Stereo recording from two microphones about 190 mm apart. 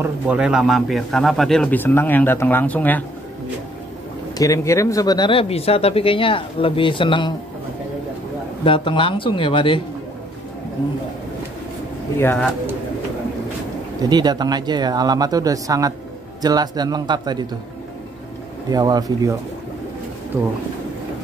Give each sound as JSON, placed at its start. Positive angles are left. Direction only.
{"t": 0.0, "sound": "speech", "side_deg": -5}
{"t": 4.4, "sound": "speech", "side_deg": 15}
{"t": 8.6, "sound": "speech", "side_deg": 25}
{"t": 12.2, "sound": "speech", "side_deg": 10}
{"t": 14.0, "sound": "speech", "side_deg": -20}
{"t": 18.7, "sound": "speech", "side_deg": -20}